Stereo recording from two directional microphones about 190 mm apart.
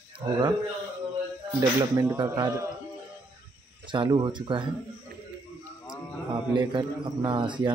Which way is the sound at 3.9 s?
25° right (ahead or behind).